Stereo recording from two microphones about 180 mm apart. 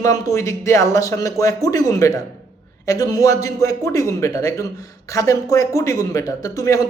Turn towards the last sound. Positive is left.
turn(degrees=15)  # may be behind; listen again after turning